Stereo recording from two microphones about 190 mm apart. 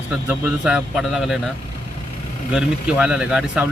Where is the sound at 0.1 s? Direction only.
10° right (ahead or behind).